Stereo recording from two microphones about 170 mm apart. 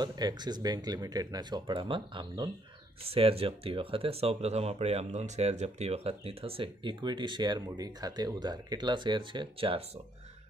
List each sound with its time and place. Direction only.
0.0 s speech: 25° right (ahead or behind)